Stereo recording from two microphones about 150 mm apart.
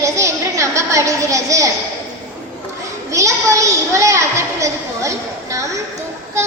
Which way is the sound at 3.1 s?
20° right (ahead or behind).